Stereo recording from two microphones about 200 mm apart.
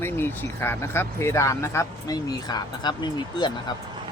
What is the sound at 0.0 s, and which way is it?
Speech, 10° left (ahead or behind).